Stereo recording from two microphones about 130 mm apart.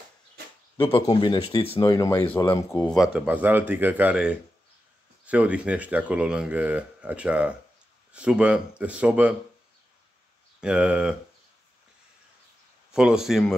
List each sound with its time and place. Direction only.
0.7 s speech: 45° left (ahead or behind)
1.8 s speech: 25° left (ahead or behind)
3.1 s speech: 10° right (ahead or behind)
10.6 s speech: 10° right (ahead or behind)
12.9 s speech: 5° right (ahead or behind)